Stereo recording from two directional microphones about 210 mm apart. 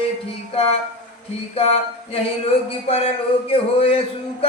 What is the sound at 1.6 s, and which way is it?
Speech, 30° left (ahead or behind).